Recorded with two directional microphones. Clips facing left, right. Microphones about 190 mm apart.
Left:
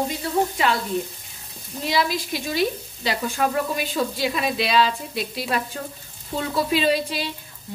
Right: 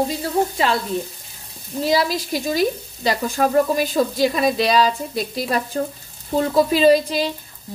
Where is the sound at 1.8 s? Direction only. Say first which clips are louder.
Right 4 dB; 40° right (ahead or behind).